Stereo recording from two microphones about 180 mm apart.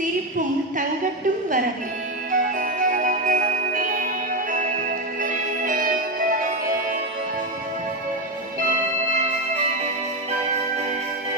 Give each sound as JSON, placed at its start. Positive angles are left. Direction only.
{"t": 2.3, "sound": "music", "side_deg": -50}